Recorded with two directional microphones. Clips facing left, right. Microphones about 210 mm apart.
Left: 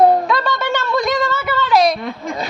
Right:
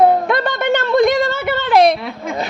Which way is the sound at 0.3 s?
55° right (ahead or behind).